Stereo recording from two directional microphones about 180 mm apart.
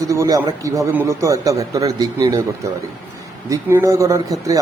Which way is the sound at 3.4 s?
15° right (ahead or behind).